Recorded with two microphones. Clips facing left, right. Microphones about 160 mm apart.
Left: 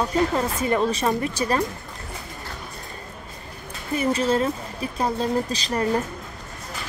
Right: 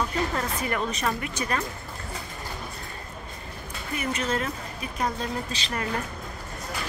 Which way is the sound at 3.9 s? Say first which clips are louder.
Left 7 dB; 30° left (ahead or behind).